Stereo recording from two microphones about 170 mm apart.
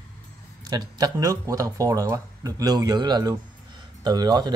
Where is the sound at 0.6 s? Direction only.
25° right (ahead or behind).